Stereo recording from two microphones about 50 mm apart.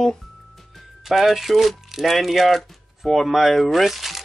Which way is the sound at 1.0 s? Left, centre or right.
Centre.